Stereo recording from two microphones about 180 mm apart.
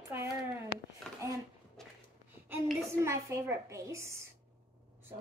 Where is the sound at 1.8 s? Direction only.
Centre (ahead or behind).